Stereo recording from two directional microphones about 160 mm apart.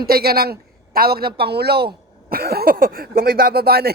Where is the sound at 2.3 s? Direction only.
75° right (ahead or behind).